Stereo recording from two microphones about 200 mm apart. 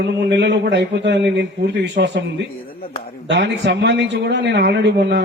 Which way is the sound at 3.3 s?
60° right (ahead or behind).